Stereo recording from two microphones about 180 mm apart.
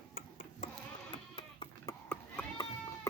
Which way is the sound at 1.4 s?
25° left (ahead or behind).